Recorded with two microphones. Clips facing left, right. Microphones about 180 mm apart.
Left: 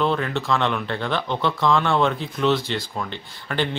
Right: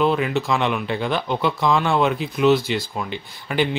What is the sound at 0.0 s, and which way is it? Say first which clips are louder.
Speech: right 3 dB; 10° right (ahead or behind).